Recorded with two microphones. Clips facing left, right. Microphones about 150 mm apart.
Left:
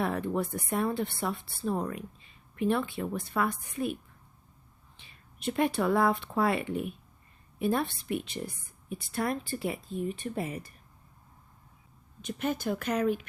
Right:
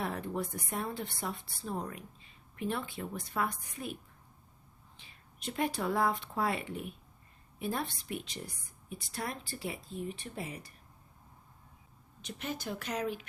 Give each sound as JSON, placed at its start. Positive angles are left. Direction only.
{"t": 0.0, "sound": "a woman's voice", "side_deg": 65}
{"t": 4.9, "sound": "a woman's voice", "side_deg": 60}
{"t": 12.2, "sound": "speech", "side_deg": 50}